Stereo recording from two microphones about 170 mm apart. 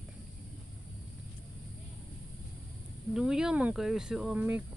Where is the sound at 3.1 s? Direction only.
5° right (ahead or behind).